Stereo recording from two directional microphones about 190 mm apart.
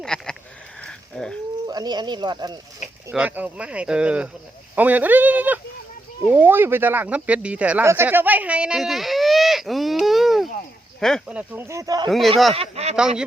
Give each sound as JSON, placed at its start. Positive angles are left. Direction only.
{"t": 0.0, "sound": "speech", "side_deg": 5}
{"t": 0.8, "sound": "a sound", "side_deg": 5}
{"t": 1.6, "sound": "speech", "side_deg": -20}
{"t": 3.1, "sound": "speech", "side_deg": -10}
{"t": 12.5, "sound": "speech", "side_deg": -35}
{"t": 13.0, "sound": "speech", "side_deg": -5}